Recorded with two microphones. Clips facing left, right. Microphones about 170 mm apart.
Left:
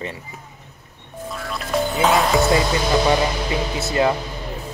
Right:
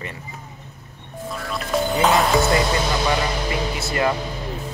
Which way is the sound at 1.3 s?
Centre (ahead or behind).